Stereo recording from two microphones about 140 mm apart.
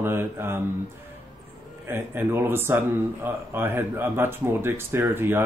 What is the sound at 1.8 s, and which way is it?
Speech, 15° right (ahead or behind).